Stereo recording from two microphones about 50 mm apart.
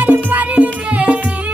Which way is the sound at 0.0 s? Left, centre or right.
Right.